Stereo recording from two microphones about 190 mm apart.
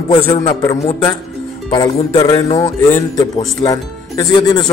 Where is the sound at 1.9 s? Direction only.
25° left (ahead or behind).